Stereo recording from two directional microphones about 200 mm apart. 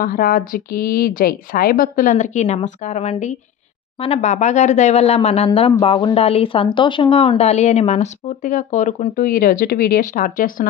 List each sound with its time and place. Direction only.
0.0 s speech: 45° left (ahead or behind)